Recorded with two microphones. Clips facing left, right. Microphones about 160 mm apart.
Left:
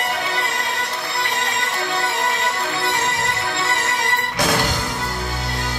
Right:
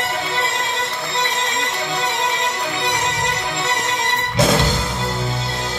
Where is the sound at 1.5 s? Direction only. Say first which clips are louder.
Even; 20° right (ahead or behind).